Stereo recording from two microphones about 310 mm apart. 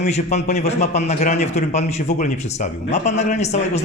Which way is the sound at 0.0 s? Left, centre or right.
Left.